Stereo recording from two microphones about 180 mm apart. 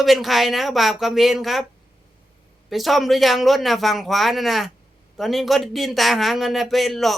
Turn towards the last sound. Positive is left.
turn(degrees=0)  # may be behind; listen again after turning